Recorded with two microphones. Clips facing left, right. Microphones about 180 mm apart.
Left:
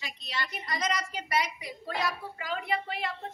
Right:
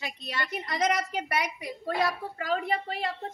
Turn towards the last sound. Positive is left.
turn(degrees=-40)  # may be behind; listen again after turning